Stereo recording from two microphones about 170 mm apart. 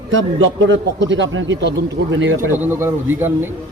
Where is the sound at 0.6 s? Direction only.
90° right.